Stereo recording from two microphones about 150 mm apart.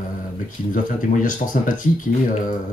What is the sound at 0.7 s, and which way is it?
Speech, 60° left (ahead or behind).